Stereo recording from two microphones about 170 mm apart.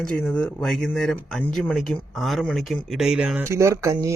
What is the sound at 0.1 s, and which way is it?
A man's voice, 5° left (ahead or behind).